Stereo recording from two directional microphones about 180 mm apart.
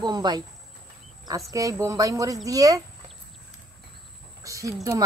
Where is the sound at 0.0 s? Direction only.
25° right (ahead or behind).